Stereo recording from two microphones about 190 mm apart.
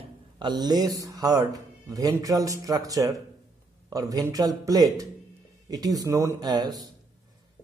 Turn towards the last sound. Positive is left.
turn(degrees=-20)  # may be behind; listen again after turning